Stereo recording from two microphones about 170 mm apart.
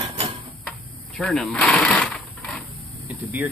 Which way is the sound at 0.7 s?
5° left (ahead or behind).